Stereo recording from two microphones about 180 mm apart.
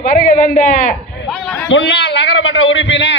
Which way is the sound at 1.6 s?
80° left.